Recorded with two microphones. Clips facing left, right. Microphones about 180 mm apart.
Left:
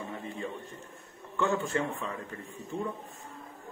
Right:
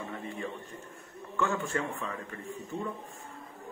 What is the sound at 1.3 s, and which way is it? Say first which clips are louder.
Speech: left 2 dB; 20° left (ahead or behind).